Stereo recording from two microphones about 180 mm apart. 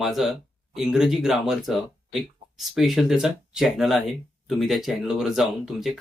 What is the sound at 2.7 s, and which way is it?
Speech, centre (ahead or behind).